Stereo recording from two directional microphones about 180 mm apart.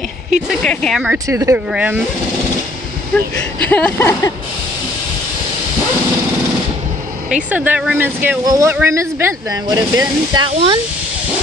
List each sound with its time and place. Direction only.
0.6 s speech: 5° left (ahead or behind)
1.3 s speech: 15° right (ahead or behind)
3.6 s speech: 10° left (ahead or behind)
7.5 s speech: 10° right (ahead or behind); by 10.8 s 30° right (ahead or behind)